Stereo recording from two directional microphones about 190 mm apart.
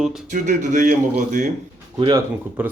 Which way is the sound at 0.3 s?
40° right (ahead or behind).